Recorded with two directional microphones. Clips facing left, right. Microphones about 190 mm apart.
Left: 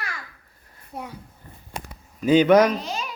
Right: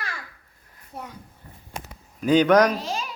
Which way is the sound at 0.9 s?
10° left (ahead or behind).